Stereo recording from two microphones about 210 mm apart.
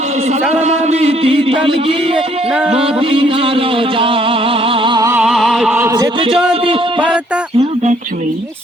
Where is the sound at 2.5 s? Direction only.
5° right (ahead or behind).